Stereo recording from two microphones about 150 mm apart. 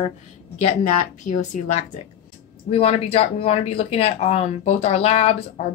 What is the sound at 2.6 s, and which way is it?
Speech, 40° left (ahead or behind).